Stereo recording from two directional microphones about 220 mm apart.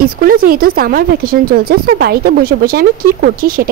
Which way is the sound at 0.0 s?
40° right (ahead or behind).